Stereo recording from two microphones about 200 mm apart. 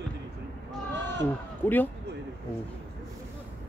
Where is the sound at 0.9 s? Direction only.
60° right (ahead or behind).